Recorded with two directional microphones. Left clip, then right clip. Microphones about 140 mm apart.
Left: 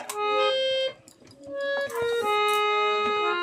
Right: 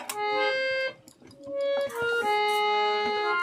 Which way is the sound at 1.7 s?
25° left (ahead or behind).